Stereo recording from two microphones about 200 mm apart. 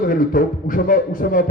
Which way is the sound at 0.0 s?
45° left (ahead or behind).